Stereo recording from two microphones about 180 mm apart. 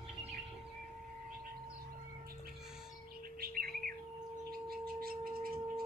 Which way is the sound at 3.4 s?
55° right (ahead or behind).